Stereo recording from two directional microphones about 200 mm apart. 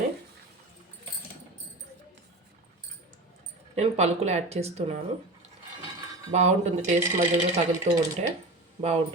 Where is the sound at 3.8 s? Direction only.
35° right (ahead or behind).